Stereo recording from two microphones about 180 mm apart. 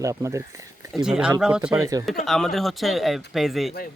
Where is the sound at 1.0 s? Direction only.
5° right (ahead or behind).